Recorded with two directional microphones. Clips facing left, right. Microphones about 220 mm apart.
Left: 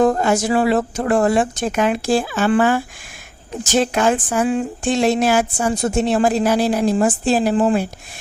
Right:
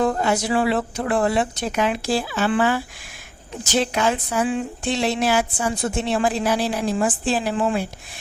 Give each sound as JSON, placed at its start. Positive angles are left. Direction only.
{"t": 0.0, "sound": "speech", "side_deg": 45}